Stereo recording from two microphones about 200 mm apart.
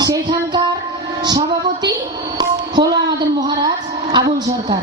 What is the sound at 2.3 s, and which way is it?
Music, 20° right (ahead or behind).